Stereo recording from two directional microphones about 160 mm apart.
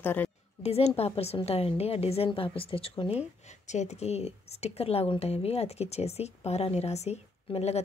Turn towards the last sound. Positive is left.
turn(degrees=40)  # may be behind; listen again after turning